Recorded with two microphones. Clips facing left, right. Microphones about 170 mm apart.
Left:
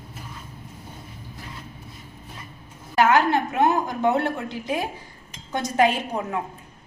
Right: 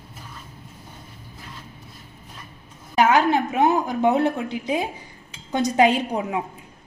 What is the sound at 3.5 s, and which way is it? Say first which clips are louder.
Speech: right 2 dB; 15° right (ahead or behind).